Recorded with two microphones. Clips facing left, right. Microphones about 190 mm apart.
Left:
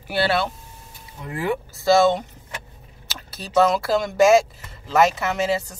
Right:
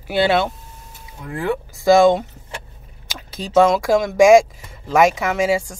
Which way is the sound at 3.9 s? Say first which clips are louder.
Right 6 dB; 10° right (ahead or behind).